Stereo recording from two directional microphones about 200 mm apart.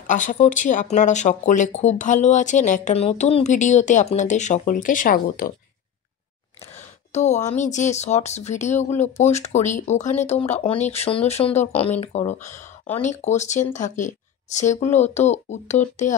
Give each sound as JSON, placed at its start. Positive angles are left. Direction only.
{"t": 0.0, "sound": "speech", "side_deg": 40}
{"t": 7.1, "sound": "speech", "side_deg": 35}